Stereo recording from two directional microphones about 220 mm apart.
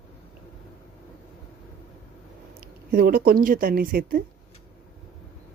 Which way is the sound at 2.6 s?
40° right (ahead or behind).